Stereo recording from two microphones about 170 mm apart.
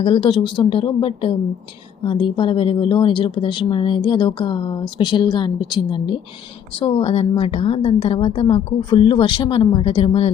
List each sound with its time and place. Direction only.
0.0 s a woman's voice: 35° left (ahead or behind)